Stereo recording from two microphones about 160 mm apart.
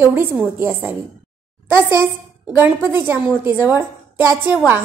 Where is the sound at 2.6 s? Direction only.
10° right (ahead or behind).